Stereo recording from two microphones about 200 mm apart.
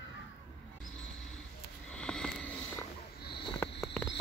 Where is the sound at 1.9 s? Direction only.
5° left (ahead or behind).